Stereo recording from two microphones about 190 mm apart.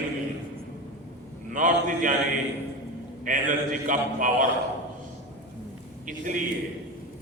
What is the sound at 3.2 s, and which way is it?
A man's voice, 45° right (ahead or behind).